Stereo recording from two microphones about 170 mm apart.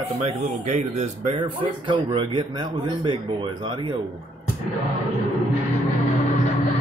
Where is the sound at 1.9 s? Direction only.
30° right (ahead or behind).